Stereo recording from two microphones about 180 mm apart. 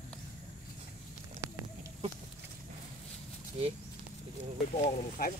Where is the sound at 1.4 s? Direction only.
15° right (ahead or behind).